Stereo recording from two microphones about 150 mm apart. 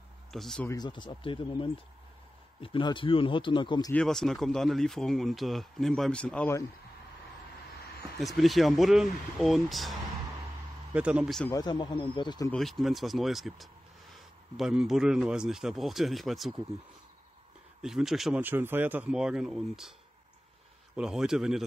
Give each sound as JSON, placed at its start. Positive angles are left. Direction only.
{"t": 0.3, "sound": "speech", "side_deg": 5}
{"t": 0.7, "sound": "speech", "side_deg": 30}
{"t": 3.9, "sound": "speech", "side_deg": 5}
{"t": 8.2, "sound": "speech", "side_deg": 0}
{"t": 11.5, "sound": "speech", "side_deg": 30}
{"t": 12.4, "sound": "speech", "side_deg": 5}
{"t": 17.8, "sound": "speech", "side_deg": -5}
{"t": 18.4, "sound": "speech", "side_deg": -15}
{"t": 20.9, "sound": "speech", "side_deg": -5}